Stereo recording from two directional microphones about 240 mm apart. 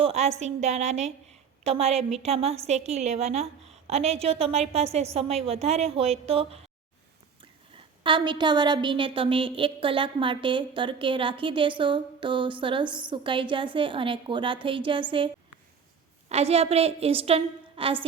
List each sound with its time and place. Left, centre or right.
0.0 s a woman's voice: right
8.0 s a woman's voice: centre
16.3 s a woman's voice: right